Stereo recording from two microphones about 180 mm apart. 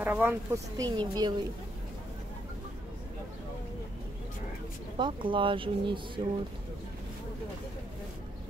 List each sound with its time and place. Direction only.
0.0 s speech: 10° right (ahead or behind)
4.9 s speech: 25° right (ahead or behind)